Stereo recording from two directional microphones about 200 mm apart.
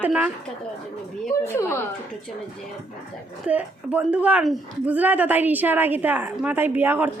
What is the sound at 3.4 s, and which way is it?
A woman's voice, 5° right (ahead or behind).